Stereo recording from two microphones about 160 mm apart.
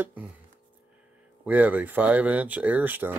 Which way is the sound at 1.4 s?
10° right (ahead or behind).